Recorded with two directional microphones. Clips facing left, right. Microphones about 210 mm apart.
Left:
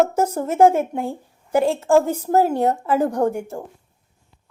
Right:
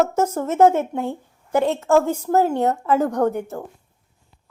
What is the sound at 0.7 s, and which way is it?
Speech, 10° left (ahead or behind).